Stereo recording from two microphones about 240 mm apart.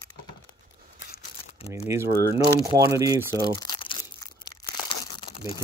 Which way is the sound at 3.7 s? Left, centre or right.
Left.